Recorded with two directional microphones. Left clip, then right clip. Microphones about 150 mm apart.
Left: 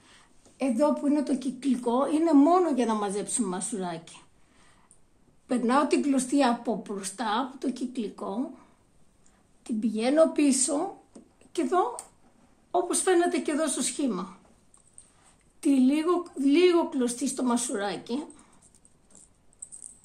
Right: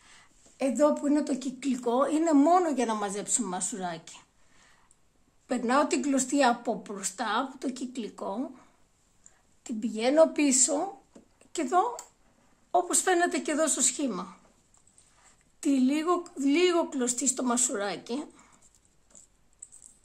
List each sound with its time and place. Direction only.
0.0 s a woman's voice: 40° right (ahead or behind); by 4.2 s 15° right (ahead or behind)
5.5 s a woman's voice: 20° right (ahead or behind)
9.6 s a woman's voice: 30° right (ahead or behind)
15.6 s a woman's voice: 30° right (ahead or behind)